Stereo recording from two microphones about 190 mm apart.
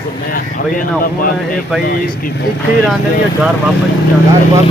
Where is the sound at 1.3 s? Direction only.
Centre (ahead or behind).